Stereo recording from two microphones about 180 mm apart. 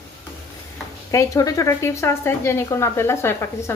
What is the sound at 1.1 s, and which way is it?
A woman's voice, 15° left (ahead or behind).